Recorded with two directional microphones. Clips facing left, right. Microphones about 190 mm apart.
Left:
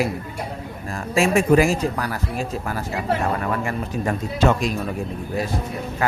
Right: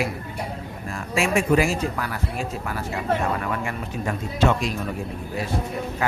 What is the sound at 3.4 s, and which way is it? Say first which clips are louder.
Speech: left 3 dB; 40° left (ahead or behind).